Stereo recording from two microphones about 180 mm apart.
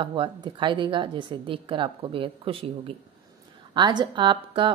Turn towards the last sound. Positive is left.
turn(degrees=-25)  # may be behind; listen again after turning